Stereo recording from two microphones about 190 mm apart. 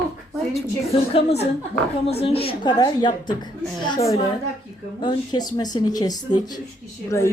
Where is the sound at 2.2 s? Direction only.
30° left (ahead or behind).